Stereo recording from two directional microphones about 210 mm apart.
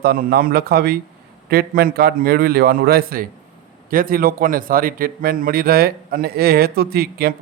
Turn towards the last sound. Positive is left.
turn(degrees=-45)  # may be behind; listen again after turning